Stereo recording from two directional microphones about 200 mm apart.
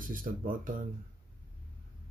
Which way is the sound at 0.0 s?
45° right (ahead or behind).